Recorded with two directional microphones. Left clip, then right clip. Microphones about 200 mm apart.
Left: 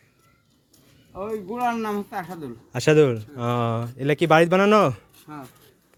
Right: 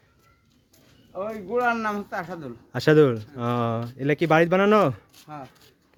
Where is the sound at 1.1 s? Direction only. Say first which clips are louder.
Right 3 dB; 15° right (ahead or behind).